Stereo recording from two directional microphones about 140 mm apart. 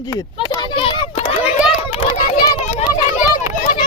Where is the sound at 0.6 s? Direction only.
35° left (ahead or behind).